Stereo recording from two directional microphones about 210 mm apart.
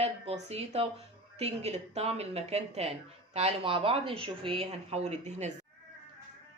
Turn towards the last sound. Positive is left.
turn(degrees=-30)  # may be behind; listen again after turning